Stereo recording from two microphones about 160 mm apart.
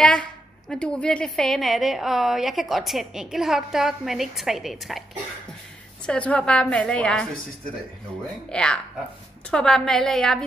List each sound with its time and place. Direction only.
0.0 s a woman's voice: 5° left (ahead or behind)
6.0 s a woman's voice: 5° left (ahead or behind)
8.5 s a woman's voice: 5° left (ahead or behind)